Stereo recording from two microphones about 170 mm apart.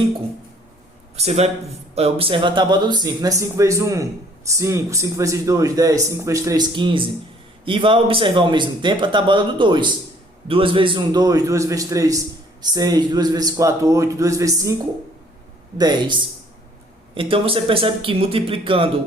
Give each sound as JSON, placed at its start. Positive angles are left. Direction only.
{"t": 1.1, "sound": "a man's voice", "side_deg": -40}
{"t": 15.8, "sound": "speech", "side_deg": -25}
{"t": 17.2, "sound": "speech", "side_deg": -30}